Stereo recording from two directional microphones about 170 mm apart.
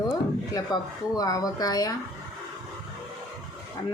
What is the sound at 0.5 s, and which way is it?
Speech, 20° left (ahead or behind).